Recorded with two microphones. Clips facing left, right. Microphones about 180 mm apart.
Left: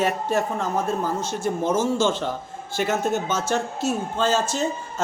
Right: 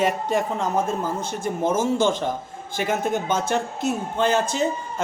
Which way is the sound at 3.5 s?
15° right (ahead or behind).